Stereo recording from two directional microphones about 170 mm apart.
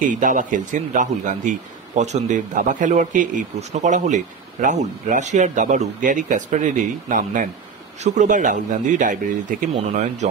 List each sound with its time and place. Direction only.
0.2 s a man's voice: 50° right (ahead or behind)